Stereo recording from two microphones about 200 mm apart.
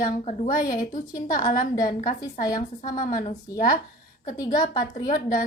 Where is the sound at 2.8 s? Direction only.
40° left (ahead or behind).